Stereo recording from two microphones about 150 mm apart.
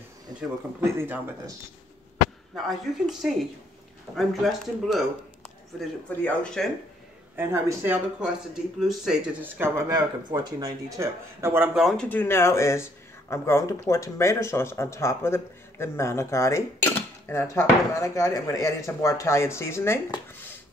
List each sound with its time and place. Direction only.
0.4 s speech: 15° right (ahead or behind)
2.5 s speech: centre (ahead or behind)
6.0 s speech: 10° left (ahead or behind)
7.3 s speech: 15° right (ahead or behind)
8.7 s speech: centre (ahead or behind)
9.8 s speech: 25° right (ahead or behind)
11.7 s speech: centre (ahead or behind)
12.1 s speech: 15° left (ahead or behind)